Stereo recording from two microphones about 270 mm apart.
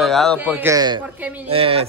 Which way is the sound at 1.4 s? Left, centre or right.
Right.